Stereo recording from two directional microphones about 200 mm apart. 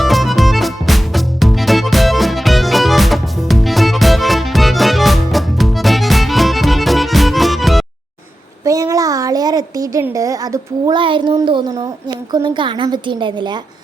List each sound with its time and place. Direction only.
0.0 s music: centre (ahead or behind)
8.6 s a woman's voice: 15° right (ahead or behind)